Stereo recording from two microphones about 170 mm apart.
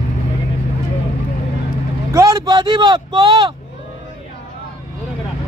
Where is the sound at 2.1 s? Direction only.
20° right (ahead or behind).